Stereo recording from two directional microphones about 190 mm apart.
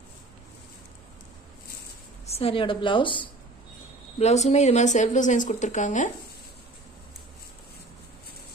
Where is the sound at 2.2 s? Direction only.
30° left (ahead or behind).